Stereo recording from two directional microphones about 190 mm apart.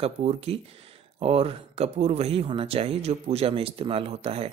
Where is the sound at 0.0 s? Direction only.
35° right (ahead or behind).